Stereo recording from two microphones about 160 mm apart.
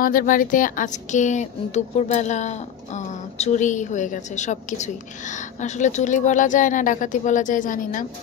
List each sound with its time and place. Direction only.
0.0 s speech: 60° left (ahead or behind)